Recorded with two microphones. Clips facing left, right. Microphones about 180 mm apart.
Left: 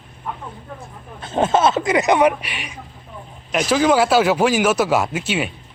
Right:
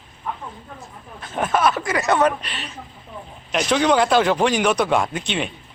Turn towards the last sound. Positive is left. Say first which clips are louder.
# left 2 dB
turn(degrees=5)  # may be behind; listen again after turning